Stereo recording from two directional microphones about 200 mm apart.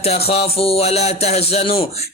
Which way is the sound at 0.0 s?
30° left (ahead or behind).